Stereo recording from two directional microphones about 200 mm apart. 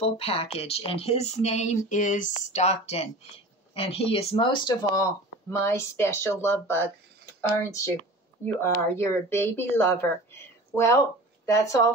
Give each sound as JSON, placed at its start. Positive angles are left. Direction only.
{"t": 0.0, "sound": "speech", "side_deg": 30}